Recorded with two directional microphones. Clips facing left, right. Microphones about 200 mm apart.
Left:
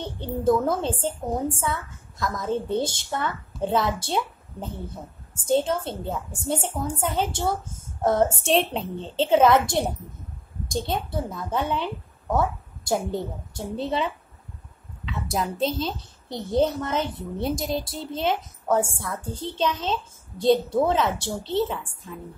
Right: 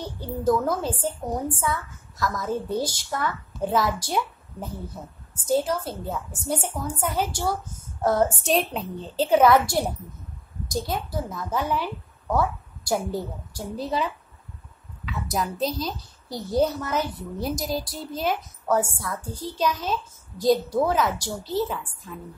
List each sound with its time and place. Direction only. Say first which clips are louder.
0.4 s a child's voice: left 1 dB; 25° left (ahead or behind)